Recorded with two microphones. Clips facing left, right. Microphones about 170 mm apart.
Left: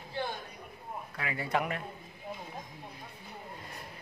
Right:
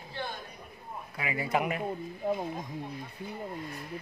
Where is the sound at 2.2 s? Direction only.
65° right (ahead or behind).